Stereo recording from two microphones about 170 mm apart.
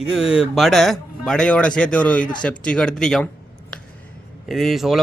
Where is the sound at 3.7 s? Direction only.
5° left (ahead or behind).